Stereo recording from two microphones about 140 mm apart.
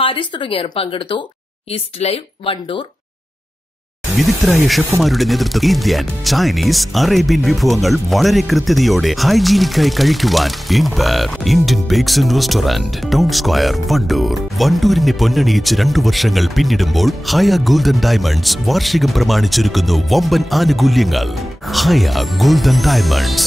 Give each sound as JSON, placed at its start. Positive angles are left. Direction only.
{"t": 0.0, "sound": "speech", "side_deg": 35}
{"t": 4.2, "sound": "speech", "side_deg": 0}